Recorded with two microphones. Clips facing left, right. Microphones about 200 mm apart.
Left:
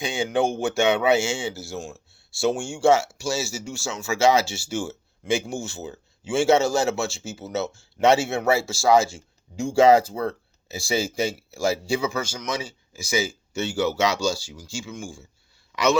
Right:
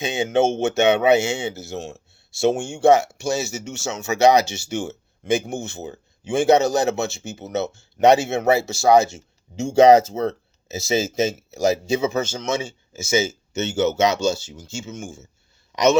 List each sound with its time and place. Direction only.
0.0 s speech: 20° right (ahead or behind)